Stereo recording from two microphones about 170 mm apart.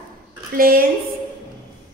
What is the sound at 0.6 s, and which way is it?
Speech, 60° right (ahead or behind).